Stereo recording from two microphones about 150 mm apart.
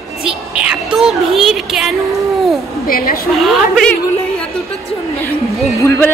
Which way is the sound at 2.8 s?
75° left (ahead or behind).